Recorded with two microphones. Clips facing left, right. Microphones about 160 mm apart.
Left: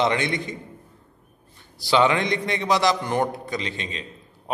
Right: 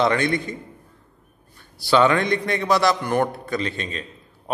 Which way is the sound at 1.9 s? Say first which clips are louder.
Right 2 dB; 20° left (ahead or behind).